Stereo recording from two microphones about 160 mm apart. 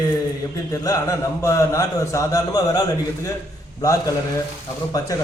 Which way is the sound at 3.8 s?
20° left (ahead or behind).